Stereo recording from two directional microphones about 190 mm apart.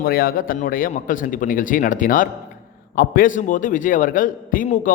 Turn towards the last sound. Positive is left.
turn(degrees=45)  # may be behind; listen again after turning